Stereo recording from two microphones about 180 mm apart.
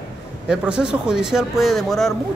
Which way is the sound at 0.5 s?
5° right (ahead or behind).